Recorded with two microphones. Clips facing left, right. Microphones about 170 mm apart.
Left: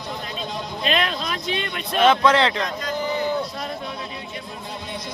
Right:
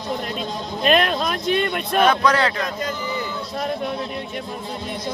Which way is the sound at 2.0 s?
25° left (ahead or behind).